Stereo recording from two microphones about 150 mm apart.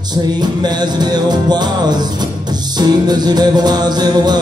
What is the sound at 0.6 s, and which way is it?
Music, 30° right (ahead or behind).